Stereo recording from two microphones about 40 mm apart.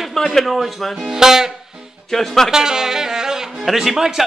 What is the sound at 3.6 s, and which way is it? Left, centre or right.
Speech, centre.